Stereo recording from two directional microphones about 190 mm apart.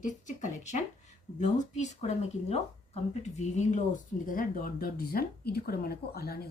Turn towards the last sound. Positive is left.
turn(degrees=55)  # may be behind; listen again after turning